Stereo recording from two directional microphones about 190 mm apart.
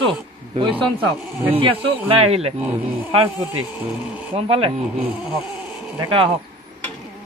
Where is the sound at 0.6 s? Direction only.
25° right (ahead or behind).